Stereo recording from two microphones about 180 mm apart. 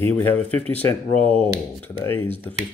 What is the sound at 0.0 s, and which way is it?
Speech, 10° left (ahead or behind).